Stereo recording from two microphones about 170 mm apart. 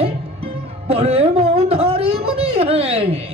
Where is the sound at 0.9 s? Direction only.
35° right (ahead or behind).